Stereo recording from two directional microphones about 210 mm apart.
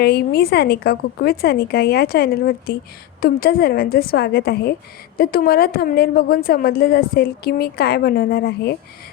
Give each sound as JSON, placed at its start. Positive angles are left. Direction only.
{"t": 0.0, "sound": "a woman's voice", "side_deg": 50}